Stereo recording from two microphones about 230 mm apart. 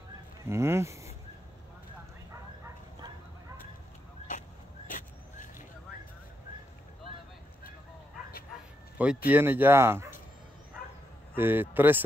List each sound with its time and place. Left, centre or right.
0.5 s speech: centre
4.3 s vehicle: left
8.9 s speech: centre
11.3 s speech: centre